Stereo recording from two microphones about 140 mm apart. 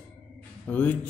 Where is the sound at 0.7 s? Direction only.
10° left (ahead or behind).